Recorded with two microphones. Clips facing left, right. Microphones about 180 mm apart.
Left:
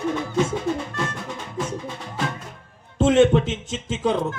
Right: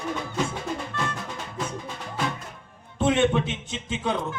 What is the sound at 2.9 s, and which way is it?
Speech, 45° left (ahead or behind).